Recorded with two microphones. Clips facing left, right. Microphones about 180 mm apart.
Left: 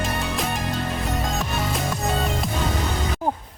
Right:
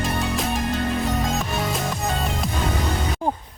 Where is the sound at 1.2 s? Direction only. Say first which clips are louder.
Right 2 dB; centre (ahead or behind).